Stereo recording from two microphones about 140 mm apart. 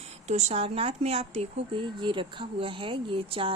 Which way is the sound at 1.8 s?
35° right (ahead or behind).